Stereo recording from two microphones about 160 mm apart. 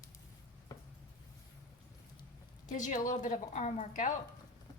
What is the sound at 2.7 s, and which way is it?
A woman's voice, 55° left (ahead or behind).